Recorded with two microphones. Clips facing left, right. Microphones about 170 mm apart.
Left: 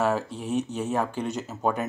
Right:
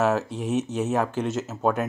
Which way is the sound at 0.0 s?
5° right (ahead or behind).